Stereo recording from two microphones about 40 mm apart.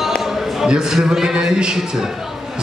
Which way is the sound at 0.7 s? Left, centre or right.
Centre.